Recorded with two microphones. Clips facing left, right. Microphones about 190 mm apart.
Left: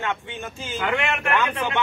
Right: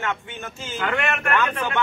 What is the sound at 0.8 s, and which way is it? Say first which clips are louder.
Speech: even; 15° left (ahead or behind).